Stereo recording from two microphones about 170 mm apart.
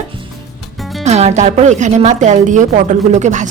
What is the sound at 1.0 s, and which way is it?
Speech, 40° right (ahead or behind).